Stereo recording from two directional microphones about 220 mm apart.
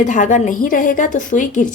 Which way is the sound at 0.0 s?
35° left (ahead or behind).